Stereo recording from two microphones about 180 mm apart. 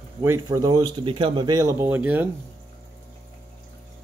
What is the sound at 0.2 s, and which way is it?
Speech, 15° right (ahead or behind).